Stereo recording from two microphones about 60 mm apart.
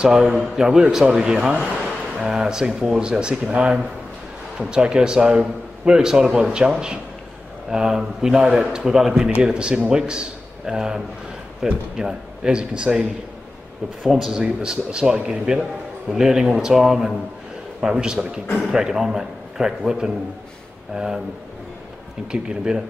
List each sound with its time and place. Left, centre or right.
0.0 s a man's voice: centre
1.8 s a sound: centre
2.8 s a man's voice: centre
14.0 s speech: centre
14.3 s a man's voice: centre
22.3 s a man's voice: centre